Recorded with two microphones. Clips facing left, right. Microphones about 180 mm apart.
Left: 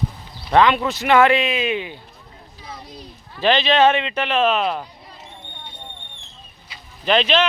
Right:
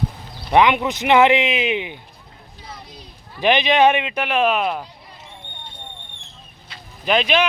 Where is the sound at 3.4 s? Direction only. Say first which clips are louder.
Even; 15° right (ahead or behind).